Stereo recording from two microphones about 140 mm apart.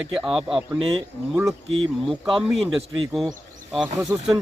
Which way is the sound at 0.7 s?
40° right (ahead or behind).